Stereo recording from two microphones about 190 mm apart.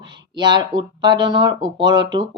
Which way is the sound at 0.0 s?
25° right (ahead or behind).